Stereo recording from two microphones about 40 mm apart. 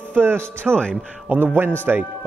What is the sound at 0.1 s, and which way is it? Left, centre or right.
Speech, right.